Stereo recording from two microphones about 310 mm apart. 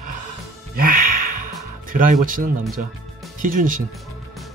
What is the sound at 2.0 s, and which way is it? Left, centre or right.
Speech, right.